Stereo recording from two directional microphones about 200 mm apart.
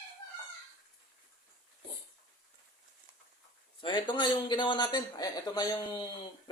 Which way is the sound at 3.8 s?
25° left (ahead or behind).